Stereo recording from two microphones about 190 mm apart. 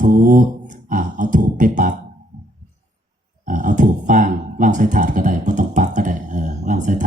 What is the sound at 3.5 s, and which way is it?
Speech, 40° right (ahead or behind).